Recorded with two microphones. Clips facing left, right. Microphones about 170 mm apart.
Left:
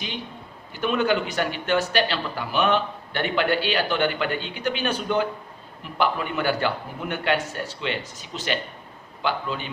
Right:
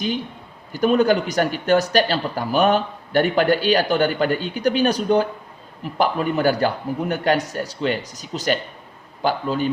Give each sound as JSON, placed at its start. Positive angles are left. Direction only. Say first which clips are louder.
{"t": 0.7, "sound": "speech", "louder": "right 6 dB", "side_deg": -40}